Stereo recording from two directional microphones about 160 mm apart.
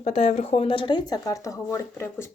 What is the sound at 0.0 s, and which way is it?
Speech, 45° left (ahead or behind).